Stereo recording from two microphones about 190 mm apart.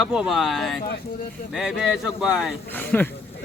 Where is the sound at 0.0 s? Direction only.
5° right (ahead or behind).